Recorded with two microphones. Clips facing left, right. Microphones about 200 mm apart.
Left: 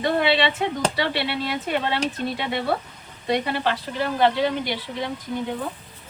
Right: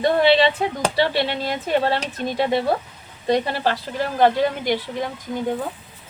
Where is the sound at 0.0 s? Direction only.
35° right (ahead or behind).